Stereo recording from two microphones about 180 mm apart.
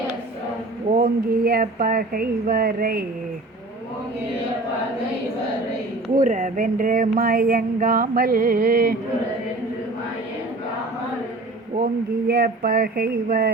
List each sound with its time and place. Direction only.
0.9 s speech: 55° right (ahead or behind)
6.1 s a sound: 45° right (ahead or behind)
12.3 s speech: 60° right (ahead or behind)